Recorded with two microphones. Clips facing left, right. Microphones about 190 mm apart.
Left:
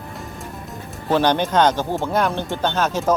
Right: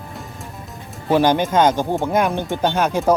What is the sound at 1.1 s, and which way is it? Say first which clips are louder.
Speech: right 2 dB; 10° right (ahead or behind).